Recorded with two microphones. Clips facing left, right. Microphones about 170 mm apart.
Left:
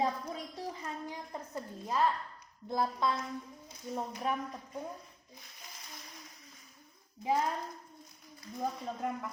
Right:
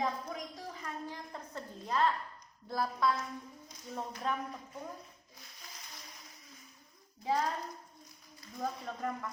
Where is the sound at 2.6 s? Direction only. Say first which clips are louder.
Even; 20° left (ahead or behind).